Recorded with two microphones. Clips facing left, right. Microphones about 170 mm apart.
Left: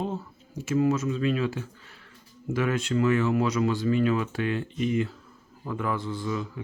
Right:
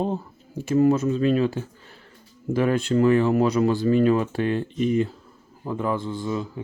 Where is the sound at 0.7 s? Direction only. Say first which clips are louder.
Right 5 dB; 35° right (ahead or behind).